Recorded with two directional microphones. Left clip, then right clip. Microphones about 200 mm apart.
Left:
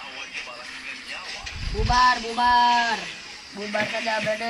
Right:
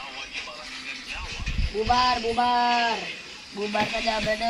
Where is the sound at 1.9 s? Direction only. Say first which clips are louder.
Left 3 dB; 45° left (ahead or behind).